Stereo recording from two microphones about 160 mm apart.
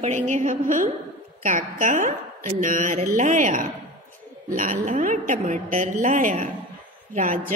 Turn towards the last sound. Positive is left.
turn(degrees=-50)  # may be behind; listen again after turning